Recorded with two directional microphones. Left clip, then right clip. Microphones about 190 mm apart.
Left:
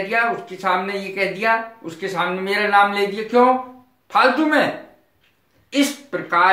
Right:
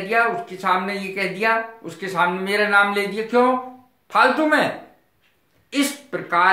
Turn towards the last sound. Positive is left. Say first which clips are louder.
# left 1 dB
turn(degrees=-10)  # may be behind; listen again after turning